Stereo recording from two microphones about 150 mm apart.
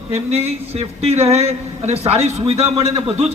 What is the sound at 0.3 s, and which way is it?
A man's voice, 45° right (ahead or behind).